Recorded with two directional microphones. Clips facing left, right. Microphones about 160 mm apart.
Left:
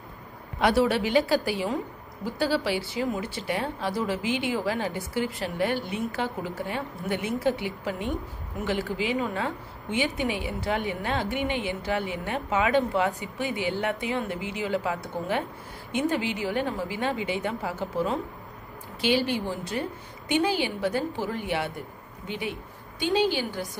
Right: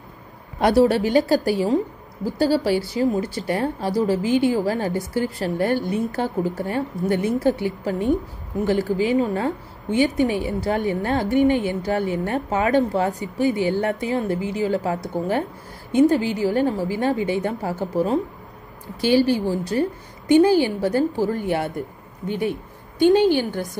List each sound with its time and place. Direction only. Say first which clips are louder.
0.6 s a woman's voice: right 6 dB; 40° right (ahead or behind)
19.3 s a woman's voice: right 8 dB; 35° right (ahead or behind); by 23.7 s 50° right (ahead or behind)